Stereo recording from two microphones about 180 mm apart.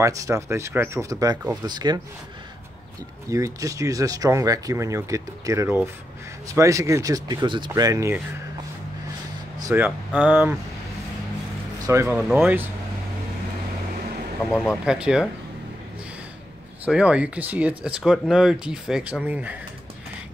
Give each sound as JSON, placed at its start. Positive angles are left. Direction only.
{"t": 0.0, "sound": "speech", "side_deg": -15}
{"t": 3.3, "sound": "speech", "side_deg": -20}
{"t": 9.6, "sound": "speech", "side_deg": -15}
{"t": 11.8, "sound": "speech", "side_deg": -15}
{"t": 14.5, "sound": "speech", "side_deg": 0}
{"t": 16.8, "sound": "speech", "side_deg": -5}